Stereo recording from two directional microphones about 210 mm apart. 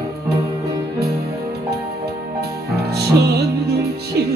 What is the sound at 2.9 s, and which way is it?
Music, 50° right (ahead or behind).